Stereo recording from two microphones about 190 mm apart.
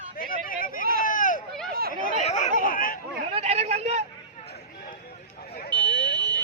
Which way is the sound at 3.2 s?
35° right (ahead or behind).